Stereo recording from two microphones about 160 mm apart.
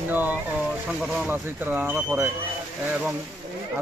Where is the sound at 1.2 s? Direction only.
10° right (ahead or behind).